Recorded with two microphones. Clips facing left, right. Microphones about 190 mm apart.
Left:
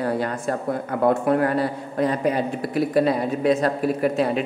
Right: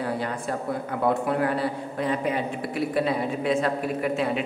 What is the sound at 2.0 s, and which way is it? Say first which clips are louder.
A woman's voice: left 5 dB; 40° left (ahead or behind).